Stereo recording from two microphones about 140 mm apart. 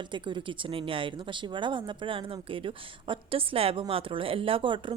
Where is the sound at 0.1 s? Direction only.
35° right (ahead or behind).